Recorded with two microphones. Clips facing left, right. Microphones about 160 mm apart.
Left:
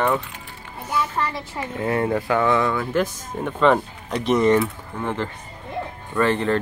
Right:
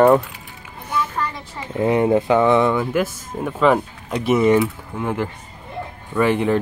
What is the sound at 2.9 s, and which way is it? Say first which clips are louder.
Speech: right 1 dB; 5° right (ahead or behind).